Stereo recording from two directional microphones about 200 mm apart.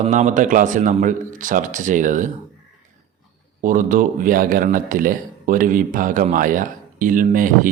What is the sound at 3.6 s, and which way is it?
Speech, 40° right (ahead or behind).